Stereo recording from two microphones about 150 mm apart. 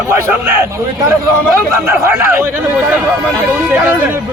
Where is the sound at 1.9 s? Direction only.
15° right (ahead or behind).